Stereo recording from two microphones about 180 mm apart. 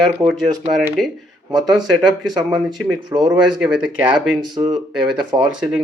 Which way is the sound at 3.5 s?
5° right (ahead or behind).